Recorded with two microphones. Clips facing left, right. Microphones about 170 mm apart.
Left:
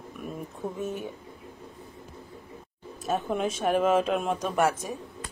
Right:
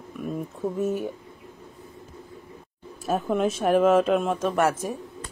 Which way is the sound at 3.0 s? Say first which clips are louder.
Right 4 dB; 5° right (ahead or behind).